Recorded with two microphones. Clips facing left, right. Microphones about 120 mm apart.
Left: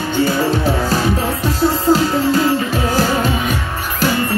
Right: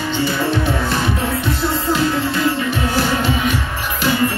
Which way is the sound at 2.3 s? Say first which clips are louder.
Left 3 dB; 40° left (ahead or behind).